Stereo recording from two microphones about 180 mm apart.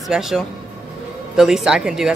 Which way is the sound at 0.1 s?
Centre (ahead or behind).